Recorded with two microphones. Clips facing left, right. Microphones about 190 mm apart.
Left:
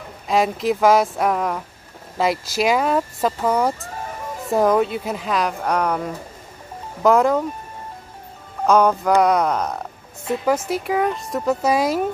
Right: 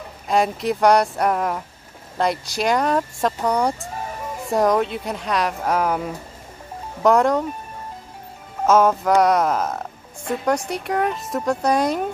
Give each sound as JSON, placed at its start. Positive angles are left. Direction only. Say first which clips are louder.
{"t": 0.3, "sound": "speech", "louder": "left 1 dB", "side_deg": 0}
{"t": 8.6, "sound": "speech", "louder": "even", "side_deg": 0}